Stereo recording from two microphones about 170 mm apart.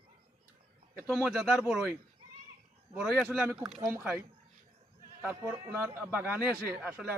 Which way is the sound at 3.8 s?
15° right (ahead or behind).